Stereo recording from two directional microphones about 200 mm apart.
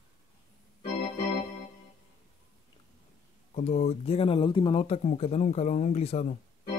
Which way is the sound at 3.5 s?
35° left (ahead or behind).